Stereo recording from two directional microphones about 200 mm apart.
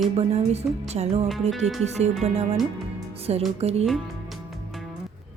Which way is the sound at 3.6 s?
30° right (ahead or behind).